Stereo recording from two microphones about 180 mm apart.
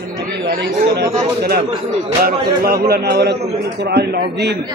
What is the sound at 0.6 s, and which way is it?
Speech, 65° right (ahead or behind).